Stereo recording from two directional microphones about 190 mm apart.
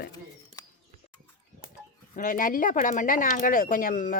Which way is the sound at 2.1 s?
45° left (ahead or behind).